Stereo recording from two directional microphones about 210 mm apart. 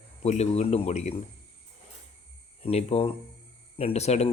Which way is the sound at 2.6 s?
30° left (ahead or behind).